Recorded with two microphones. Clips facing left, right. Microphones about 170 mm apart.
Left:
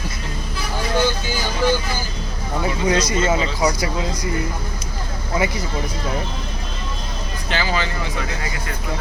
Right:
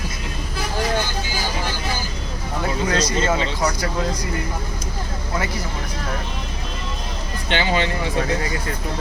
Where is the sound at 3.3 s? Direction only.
10° left (ahead or behind).